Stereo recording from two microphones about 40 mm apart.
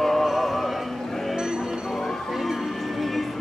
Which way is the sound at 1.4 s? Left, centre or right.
Centre.